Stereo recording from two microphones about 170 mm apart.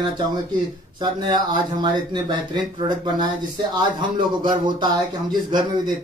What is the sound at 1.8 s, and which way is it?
Speech, 25° right (ahead or behind).